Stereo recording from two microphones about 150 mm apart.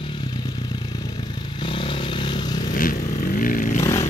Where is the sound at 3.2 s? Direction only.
65° left (ahead or behind).